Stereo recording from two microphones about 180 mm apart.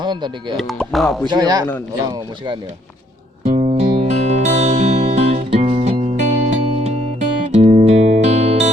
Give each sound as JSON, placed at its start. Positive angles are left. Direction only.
{"t": 0.0, "sound": "speech", "side_deg": -25}
{"t": 0.5, "sound": "speech", "side_deg": 5}
{"t": 1.3, "sound": "a man's voice", "side_deg": -20}
{"t": 3.4, "sound": "music", "side_deg": -35}